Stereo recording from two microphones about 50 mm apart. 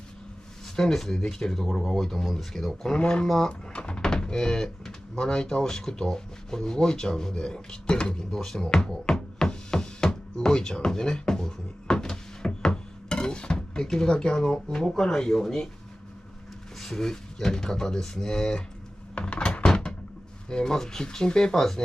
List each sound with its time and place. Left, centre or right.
0.7 s speech: centre
3.0 s speech: centre
9.0 s music: centre
15.0 s speech: centre
16.8 s speech: centre
19.1 s a sound: left
20.4 s speech: centre